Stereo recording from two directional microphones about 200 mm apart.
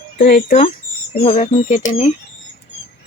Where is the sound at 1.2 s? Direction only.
35° left (ahead or behind).